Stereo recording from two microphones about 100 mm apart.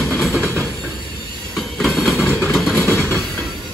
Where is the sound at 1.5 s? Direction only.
Centre (ahead or behind).